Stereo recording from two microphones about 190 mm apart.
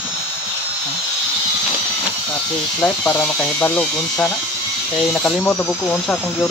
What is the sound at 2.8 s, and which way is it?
Speech, 5° left (ahead or behind).